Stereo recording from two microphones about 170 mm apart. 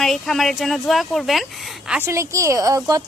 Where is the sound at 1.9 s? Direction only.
15° right (ahead or behind).